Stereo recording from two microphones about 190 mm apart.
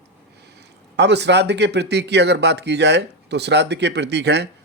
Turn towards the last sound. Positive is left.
turn(degrees=-60)  # may be behind; listen again after turning